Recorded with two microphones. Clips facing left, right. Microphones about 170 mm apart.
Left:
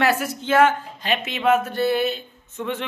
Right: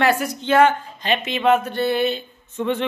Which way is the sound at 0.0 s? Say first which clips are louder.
Right 2 dB; 5° left (ahead or behind).